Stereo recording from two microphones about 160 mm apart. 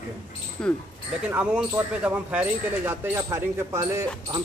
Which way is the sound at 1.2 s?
5° right (ahead or behind).